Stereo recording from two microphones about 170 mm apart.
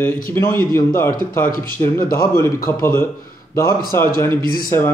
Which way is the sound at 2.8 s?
15° left (ahead or behind).